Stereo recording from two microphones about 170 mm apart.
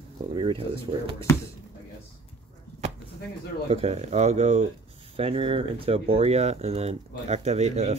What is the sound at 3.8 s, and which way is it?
Speech, 40° right (ahead or behind).